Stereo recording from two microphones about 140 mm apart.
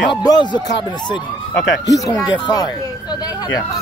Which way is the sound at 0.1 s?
30° left (ahead or behind).